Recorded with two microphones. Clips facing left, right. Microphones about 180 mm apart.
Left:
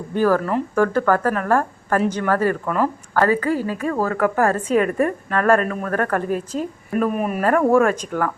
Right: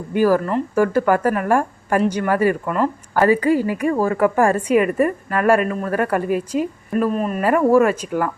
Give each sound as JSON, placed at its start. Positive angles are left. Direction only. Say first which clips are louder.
{"t": 0.1, "sound": "a woman's voice", "louder": "right 2 dB", "side_deg": -10}
{"t": 2.6, "sound": "speech", "louder": "right 1 dB", "side_deg": 0}
{"t": 3.2, "sound": "a woman's voice", "louder": "right 3 dB", "side_deg": -15}
{"t": 6.9, "sound": "speech", "louder": "right 1 dB", "side_deg": 5}
{"t": 7.4, "sound": "a woman's voice", "louder": "right 1 dB", "side_deg": -5}